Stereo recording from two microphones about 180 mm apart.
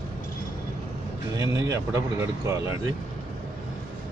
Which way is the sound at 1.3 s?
20° right (ahead or behind).